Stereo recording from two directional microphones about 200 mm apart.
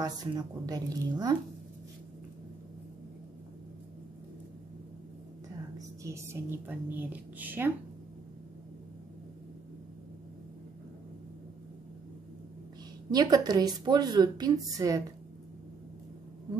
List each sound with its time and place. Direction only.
0.0 s a woman's voice: 20° right (ahead or behind)
5.8 s speech: 15° right (ahead or behind)
13.1 s a woman's voice: 20° right (ahead or behind)